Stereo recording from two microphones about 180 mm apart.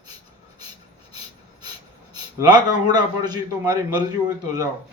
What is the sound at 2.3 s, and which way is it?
A man's voice, 25° right (ahead or behind).